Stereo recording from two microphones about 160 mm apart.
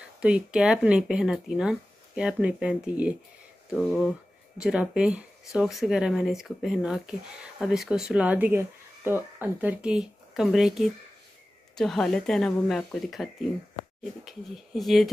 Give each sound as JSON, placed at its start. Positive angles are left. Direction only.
{"t": 0.2, "sound": "speech", "side_deg": -5}